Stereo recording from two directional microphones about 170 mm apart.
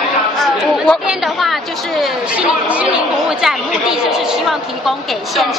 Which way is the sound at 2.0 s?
5° right (ahead or behind).